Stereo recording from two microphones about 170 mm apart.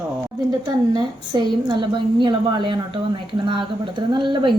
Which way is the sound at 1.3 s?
25° right (ahead or behind).